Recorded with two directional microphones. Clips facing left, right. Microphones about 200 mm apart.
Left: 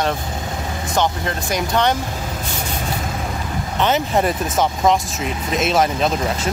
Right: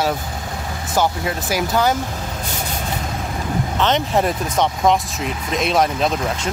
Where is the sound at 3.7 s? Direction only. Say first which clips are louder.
Left 1 dB; 5° left (ahead or behind).